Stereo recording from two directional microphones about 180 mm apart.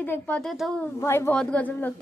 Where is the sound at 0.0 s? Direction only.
10° left (ahead or behind).